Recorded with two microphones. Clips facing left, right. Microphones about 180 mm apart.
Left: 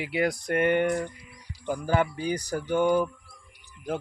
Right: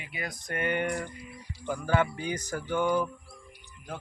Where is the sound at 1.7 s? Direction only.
15° left (ahead or behind).